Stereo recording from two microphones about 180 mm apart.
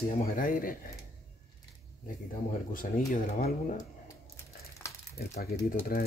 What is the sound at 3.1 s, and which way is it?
Speech, 55° left (ahead or behind).